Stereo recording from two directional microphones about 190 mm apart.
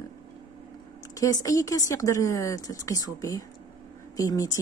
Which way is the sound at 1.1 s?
15° left (ahead or behind).